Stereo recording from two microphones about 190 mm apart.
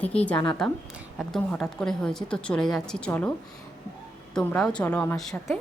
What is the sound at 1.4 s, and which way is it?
A woman's voice, 10° left (ahead or behind).